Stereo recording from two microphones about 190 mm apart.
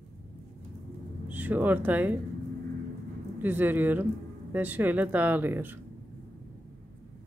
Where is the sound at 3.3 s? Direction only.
10° right (ahead or behind).